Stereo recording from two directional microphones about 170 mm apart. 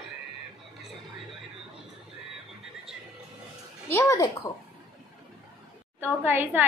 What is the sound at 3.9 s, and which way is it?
Speech, 15° left (ahead or behind).